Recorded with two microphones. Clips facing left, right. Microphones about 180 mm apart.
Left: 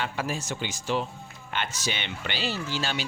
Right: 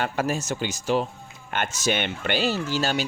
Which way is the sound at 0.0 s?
45° right (ahead or behind).